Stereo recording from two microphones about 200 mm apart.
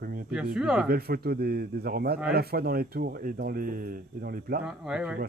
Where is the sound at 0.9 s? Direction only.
50° right (ahead or behind).